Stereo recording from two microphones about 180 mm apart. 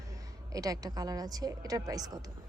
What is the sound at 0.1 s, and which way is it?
A woman's voice, 20° right (ahead or behind).